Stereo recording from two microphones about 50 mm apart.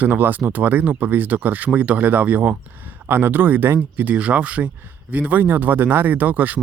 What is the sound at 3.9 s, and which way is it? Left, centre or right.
Speech, right.